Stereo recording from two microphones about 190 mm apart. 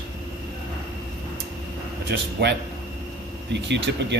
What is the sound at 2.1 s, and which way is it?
Speech, 65° right (ahead or behind).